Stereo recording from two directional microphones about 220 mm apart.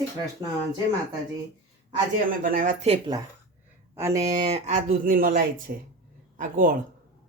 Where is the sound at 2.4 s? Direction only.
35° right (ahead or behind).